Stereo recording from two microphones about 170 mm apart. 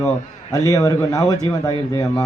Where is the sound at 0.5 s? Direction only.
20° left (ahead or behind).